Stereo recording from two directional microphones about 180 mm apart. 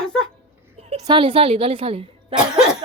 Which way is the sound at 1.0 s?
25° right (ahead or behind).